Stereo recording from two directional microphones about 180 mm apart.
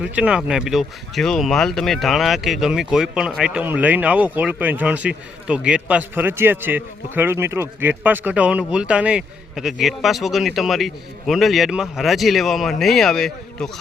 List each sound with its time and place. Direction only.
0.0 s speech: 5° right (ahead or behind)